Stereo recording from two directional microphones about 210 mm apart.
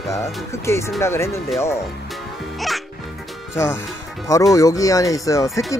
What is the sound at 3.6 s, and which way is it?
Speech, 10° left (ahead or behind).